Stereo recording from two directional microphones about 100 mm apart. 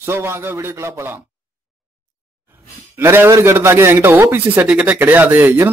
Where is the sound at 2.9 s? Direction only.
25° right (ahead or behind).